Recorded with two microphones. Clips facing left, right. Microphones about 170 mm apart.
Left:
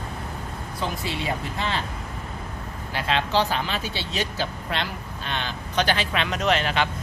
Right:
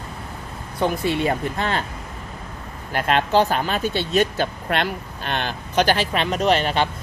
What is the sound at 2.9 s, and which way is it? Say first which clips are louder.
Speech: right 5 dB; 50° right (ahead or behind).